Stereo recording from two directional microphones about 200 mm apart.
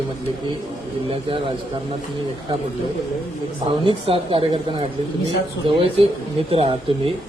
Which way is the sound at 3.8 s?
25° right (ahead or behind).